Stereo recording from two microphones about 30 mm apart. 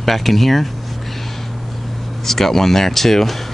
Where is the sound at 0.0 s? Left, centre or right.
Centre.